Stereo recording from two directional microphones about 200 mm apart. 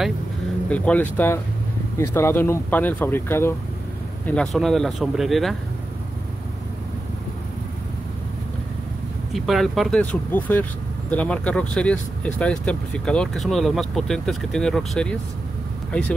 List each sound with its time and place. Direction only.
0.7 s speech: 5° left (ahead or behind)
9.3 s speech: centre (ahead or behind)